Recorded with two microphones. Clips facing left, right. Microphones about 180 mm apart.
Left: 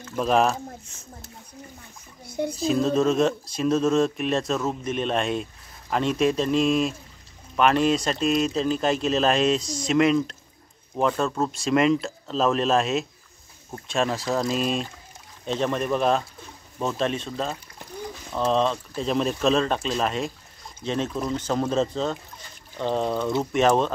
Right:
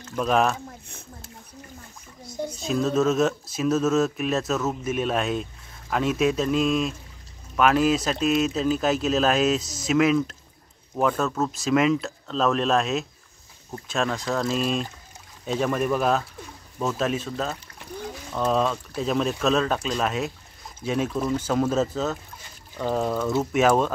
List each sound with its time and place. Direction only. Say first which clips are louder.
0.1 s speech: left 1 dB; centre (ahead or behind)
2.2 s a sound: left 4 dB; 60° left (ahead or behind)
2.5 s speech: left 1 dB; centre (ahead or behind)